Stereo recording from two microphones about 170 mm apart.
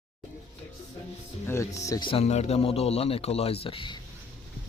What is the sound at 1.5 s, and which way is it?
Speech, 15° left (ahead or behind).